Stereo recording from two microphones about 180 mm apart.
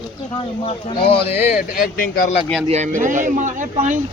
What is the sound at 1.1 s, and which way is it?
Speech, 30° left (ahead or behind).